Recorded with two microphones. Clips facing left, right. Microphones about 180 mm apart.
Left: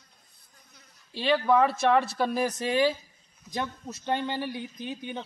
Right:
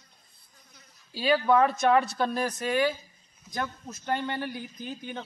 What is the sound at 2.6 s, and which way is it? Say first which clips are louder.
A man's voice: even; 25° left (ahead or behind).